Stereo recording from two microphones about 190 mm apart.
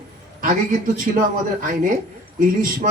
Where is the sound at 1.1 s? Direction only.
40° right (ahead or behind).